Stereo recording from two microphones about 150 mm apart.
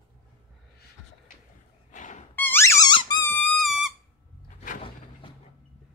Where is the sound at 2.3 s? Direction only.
15° left (ahead or behind).